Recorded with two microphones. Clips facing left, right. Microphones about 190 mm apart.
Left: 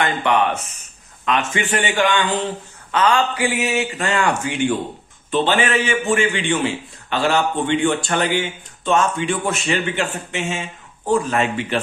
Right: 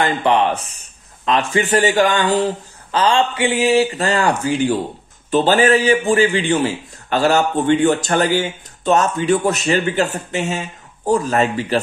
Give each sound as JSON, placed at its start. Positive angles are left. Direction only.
{"t": 0.0, "sound": "a man's voice", "side_deg": -30}